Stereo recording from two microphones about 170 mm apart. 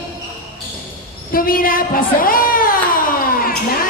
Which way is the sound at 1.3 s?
55° left (ahead or behind).